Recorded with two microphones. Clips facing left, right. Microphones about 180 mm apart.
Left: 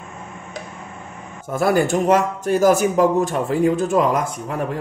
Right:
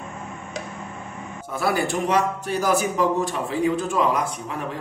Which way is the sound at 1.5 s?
45° left (ahead or behind).